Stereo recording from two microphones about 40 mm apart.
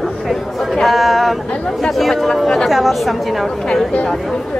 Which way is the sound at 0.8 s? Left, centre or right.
Centre.